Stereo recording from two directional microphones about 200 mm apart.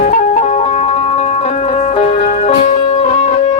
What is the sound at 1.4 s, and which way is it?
Music, 30° left (ahead or behind).